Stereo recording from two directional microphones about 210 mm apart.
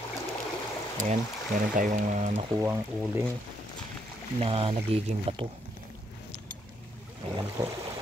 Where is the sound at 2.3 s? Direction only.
10° right (ahead or behind).